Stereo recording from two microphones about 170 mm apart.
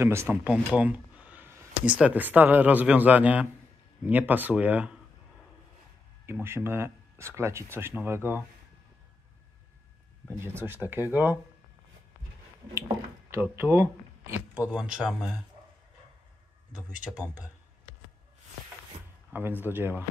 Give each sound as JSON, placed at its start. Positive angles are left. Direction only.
{"t": 0.0, "sound": "speech", "side_deg": -15}
{"t": 6.2, "sound": "speech", "side_deg": -15}
{"t": 10.4, "sound": "speech", "side_deg": -15}
{"t": 12.7, "sound": "speech", "side_deg": -15}
{"t": 16.9, "sound": "speech", "side_deg": -5}
{"t": 19.3, "sound": "speech", "side_deg": -10}